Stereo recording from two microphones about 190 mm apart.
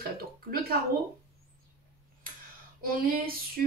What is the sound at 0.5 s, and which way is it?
Speech, 50° right (ahead or behind).